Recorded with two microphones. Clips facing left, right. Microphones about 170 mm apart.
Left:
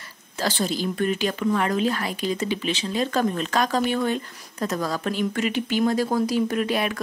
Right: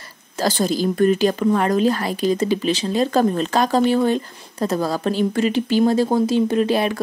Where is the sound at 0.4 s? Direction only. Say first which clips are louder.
Right 6 dB; 40° right (ahead or behind).